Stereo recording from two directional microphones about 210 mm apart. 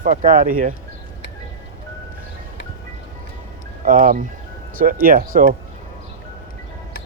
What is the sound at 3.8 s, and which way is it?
Speech, 40° right (ahead or behind).